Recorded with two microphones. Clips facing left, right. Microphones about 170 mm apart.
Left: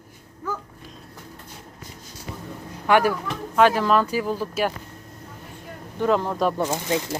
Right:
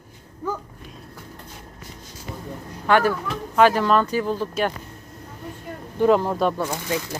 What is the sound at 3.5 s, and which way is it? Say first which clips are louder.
Speech: right 1 dB; centre (ahead or behind).